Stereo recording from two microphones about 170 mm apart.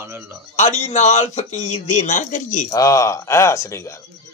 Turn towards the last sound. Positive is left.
turn(degrees=15)  # may be behind; listen again after turning